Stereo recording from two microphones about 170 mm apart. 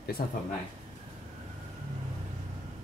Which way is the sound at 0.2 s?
60° left (ahead or behind).